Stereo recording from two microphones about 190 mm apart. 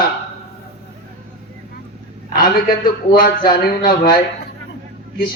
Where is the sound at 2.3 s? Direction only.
50° left (ahead or behind).